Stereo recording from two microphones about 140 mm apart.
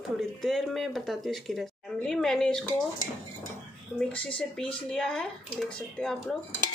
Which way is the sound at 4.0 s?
5° left (ahead or behind).